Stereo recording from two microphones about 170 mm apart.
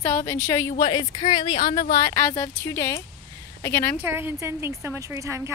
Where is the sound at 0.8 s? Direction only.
30° left (ahead or behind); by 4.0 s 10° left (ahead or behind).